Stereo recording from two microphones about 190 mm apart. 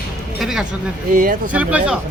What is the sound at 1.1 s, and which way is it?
Speech, 45° right (ahead or behind).